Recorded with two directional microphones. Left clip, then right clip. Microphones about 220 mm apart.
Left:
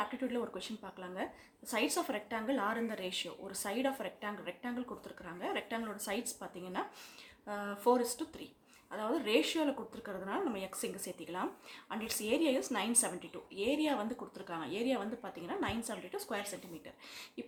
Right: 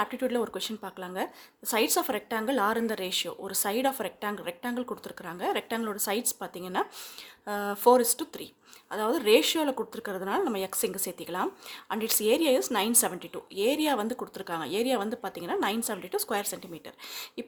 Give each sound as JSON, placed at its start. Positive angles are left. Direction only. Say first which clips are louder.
{"t": 0.0, "sound": "speech", "louder": "right 9 dB", "side_deg": -50}